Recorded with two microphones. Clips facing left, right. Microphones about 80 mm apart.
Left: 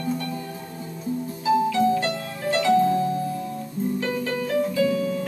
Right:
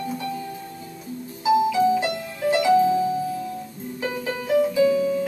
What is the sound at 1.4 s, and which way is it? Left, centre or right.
Music, centre.